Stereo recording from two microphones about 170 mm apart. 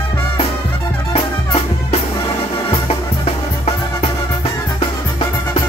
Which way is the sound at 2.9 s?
35° left (ahead or behind).